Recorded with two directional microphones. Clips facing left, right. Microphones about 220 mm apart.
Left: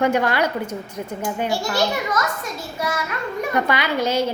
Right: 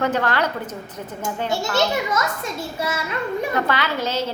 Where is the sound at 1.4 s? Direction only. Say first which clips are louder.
Right 1 dB; 25° right (ahead or behind).